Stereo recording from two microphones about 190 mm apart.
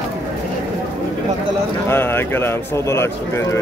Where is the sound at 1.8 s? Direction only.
10° left (ahead or behind).